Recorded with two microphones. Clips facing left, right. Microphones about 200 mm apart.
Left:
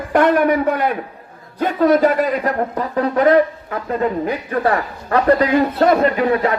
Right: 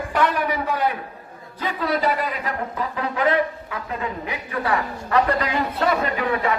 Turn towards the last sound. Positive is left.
turn(degrees=40)  # may be behind; listen again after turning